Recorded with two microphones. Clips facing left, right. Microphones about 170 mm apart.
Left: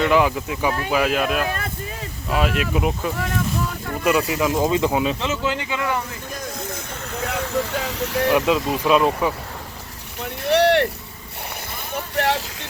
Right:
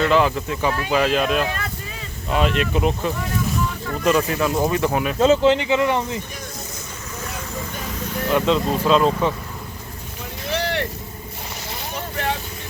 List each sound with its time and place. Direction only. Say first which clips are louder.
0.1 s speech: even; 15° left (ahead or behind)
5.2 s speech: right 9 dB; 30° right (ahead or behind)
7.1 s speech: left 7 dB; 65° left (ahead or behind)
8.3 s speech: right 1 dB; 15° left (ahead or behind)
10.2 s vehicle: left 8 dB; 65° left (ahead or behind)
12.1 s speech: left 5 dB; 75° left (ahead or behind)